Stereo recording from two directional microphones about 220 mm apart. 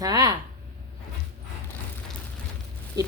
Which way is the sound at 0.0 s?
15° right (ahead or behind).